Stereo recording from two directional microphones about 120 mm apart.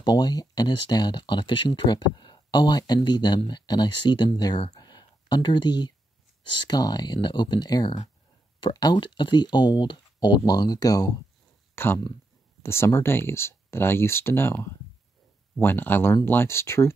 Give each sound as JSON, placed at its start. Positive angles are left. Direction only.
{"t": 0.0, "sound": "speech", "side_deg": 35}
{"t": 11.7, "sound": "speech", "side_deg": 20}